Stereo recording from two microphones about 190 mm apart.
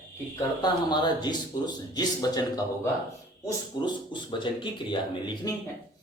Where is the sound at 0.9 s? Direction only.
20° left (ahead or behind).